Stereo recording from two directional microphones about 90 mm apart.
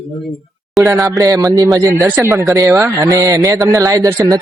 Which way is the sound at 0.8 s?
40° right (ahead or behind).